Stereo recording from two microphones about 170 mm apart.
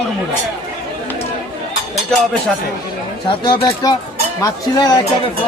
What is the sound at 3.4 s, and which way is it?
Speech, 30° left (ahead or behind).